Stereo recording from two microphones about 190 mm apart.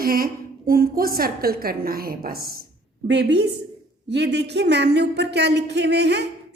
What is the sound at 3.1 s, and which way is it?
Speech, 65° right (ahead or behind).